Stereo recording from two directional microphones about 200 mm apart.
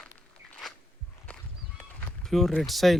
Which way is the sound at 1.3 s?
5° left (ahead or behind).